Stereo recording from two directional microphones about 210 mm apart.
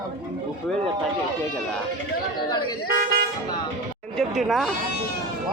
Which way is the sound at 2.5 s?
20° left (ahead or behind).